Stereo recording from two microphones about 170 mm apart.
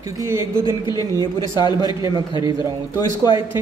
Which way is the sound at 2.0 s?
25° right (ahead or behind).